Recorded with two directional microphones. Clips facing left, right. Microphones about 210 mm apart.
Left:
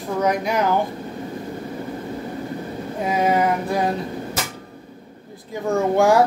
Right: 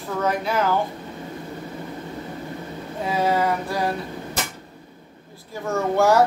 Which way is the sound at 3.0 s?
20° left (ahead or behind).